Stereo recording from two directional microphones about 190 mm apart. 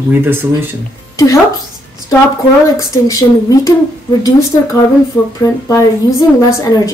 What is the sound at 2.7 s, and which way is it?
A woman's voice, 20° left (ahead or behind).